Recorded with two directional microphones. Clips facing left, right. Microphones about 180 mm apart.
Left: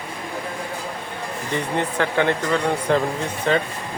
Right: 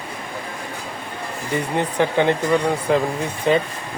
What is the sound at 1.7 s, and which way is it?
Speech, 15° right (ahead or behind).